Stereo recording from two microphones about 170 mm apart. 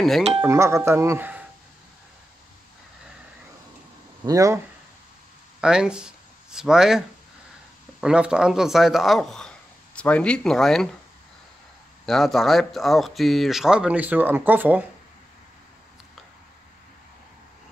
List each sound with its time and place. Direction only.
0.5 s speech: 15° right (ahead or behind)
4.2 s speech: 20° right (ahead or behind)
5.6 s speech: 5° right (ahead or behind)
12.1 s speech: centre (ahead or behind)